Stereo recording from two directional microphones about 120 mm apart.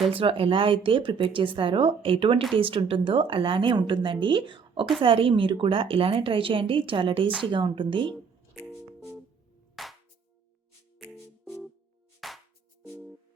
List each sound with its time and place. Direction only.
0.1 s speech: 50° right (ahead or behind)
9.8 s music: centre (ahead or behind)
12.2 s music: centre (ahead or behind)